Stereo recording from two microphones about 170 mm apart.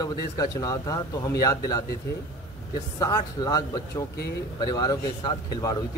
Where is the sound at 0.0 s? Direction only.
20° left (ahead or behind).